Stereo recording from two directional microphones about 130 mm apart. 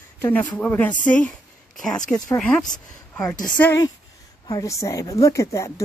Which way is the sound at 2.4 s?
5° left (ahead or behind).